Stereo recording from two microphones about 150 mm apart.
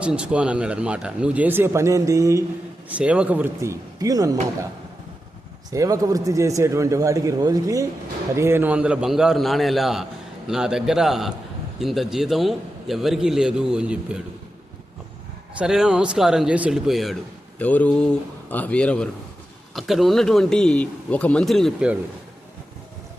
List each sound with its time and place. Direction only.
0.0 s speech: 5° right (ahead or behind)
2.9 s speech: 10° right (ahead or behind); by 4.4 s 25° right (ahead or behind)
5.7 s a man's voice: 20° right (ahead or behind)
15.5 s a man's voice: 5° right (ahead or behind)
17.6 s a man's voice: 10° left (ahead or behind)